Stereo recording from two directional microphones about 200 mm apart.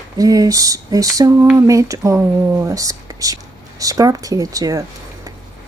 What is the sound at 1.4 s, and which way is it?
Speech, 15° right (ahead or behind).